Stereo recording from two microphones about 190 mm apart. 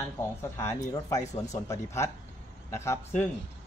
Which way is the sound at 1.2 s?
35° left (ahead or behind).